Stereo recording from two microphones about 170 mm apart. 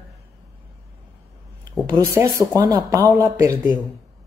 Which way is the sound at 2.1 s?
15° right (ahead or behind).